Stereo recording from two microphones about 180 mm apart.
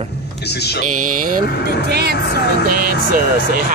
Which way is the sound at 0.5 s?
65° left (ahead or behind).